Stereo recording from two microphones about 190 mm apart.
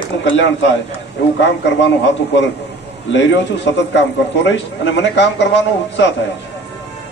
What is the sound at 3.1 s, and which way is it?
A man's voice, 70° left (ahead or behind).